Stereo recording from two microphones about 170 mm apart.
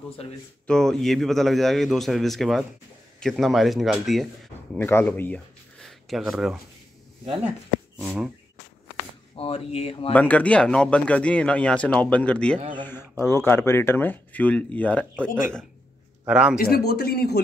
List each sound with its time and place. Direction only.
0.7 s speech: 5° left (ahead or behind)
4.7 s speech: 15° left (ahead or behind); by 6.6 s centre (ahead or behind)
8.0 s speech: 5° right (ahead or behind)
9.4 s speech: 35° left (ahead or behind)
10.1 s speech: 10° left (ahead or behind)
16.3 s a man's voice: 5° right (ahead or behind)
16.5 s speech: 65° left (ahead or behind)